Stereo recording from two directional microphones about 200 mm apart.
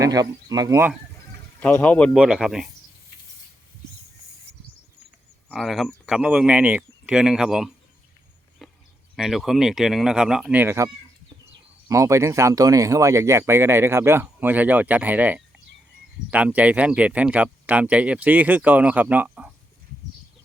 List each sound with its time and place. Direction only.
0.0 s speech: 15° right (ahead or behind)
1.6 s speech: 5° left (ahead or behind)
2.1 s speech: 5° right (ahead or behind)
5.5 s speech: centre (ahead or behind)
9.1 s speech: centre (ahead or behind)
11.9 s speech: 15° right (ahead or behind)